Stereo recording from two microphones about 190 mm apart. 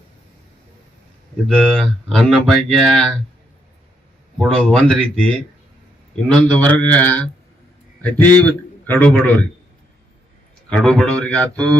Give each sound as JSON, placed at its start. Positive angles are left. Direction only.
{"t": 1.5, "sound": "speech", "side_deg": 5}
{"t": 4.4, "sound": "a man's voice", "side_deg": 5}
{"t": 10.7, "sound": "speech", "side_deg": 5}